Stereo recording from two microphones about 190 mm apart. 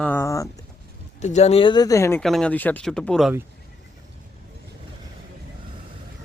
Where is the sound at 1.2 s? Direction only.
35° left (ahead or behind); by 2.2 s 15° left (ahead or behind).